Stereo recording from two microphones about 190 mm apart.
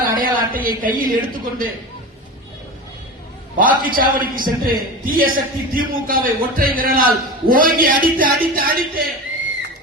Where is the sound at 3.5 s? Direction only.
45° right (ahead or behind).